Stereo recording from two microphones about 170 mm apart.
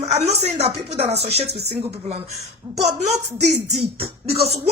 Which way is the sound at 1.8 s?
35° right (ahead or behind).